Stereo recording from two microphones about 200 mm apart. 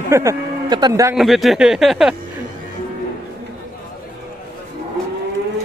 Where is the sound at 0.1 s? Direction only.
15° right (ahead or behind).